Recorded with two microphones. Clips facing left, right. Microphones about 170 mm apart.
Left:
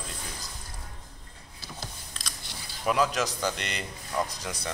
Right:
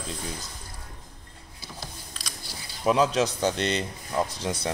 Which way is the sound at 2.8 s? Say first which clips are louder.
Right 4 dB; 25° right (ahead or behind).